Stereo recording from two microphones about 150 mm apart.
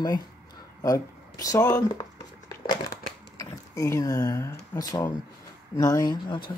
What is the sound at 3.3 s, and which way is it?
Speech, 20° left (ahead or behind).